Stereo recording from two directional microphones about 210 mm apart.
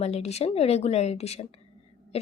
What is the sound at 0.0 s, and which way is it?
A woman's voice, 30° left (ahead or behind).